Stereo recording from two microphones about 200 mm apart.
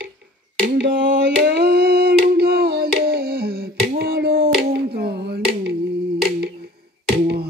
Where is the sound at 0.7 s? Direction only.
65° right (ahead or behind).